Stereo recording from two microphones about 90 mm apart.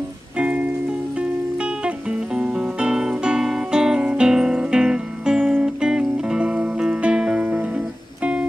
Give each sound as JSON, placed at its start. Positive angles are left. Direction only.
{"t": 0.4, "sound": "music", "side_deg": -15}
{"t": 2.3, "sound": "music", "side_deg": -10}